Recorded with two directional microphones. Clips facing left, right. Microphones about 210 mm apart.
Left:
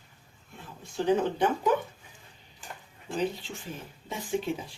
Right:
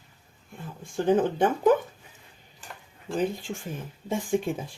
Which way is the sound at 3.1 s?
50° right (ahead or behind).